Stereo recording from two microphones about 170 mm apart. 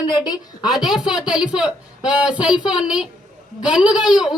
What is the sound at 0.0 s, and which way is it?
Speech, 25° left (ahead or behind).